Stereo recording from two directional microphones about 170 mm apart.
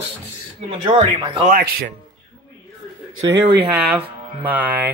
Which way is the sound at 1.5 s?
60° right (ahead or behind).